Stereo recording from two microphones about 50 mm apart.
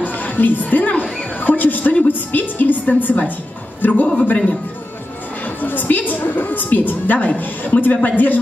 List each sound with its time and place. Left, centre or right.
0.0 s music: left
1.4 s a sound: left
2.0 s a woman's voice: left
5.4 s a woman's voice: left